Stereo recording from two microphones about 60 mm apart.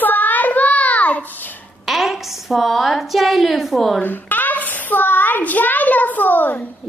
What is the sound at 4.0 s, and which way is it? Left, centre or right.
A child's voice, left.